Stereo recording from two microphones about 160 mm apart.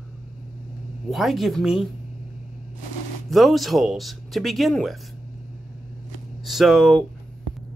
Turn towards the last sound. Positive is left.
turn(degrees=0)  # may be behind; listen again after turning